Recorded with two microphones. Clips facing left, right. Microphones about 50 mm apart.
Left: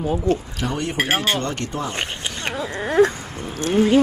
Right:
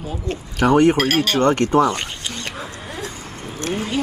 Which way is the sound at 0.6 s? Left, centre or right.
Right.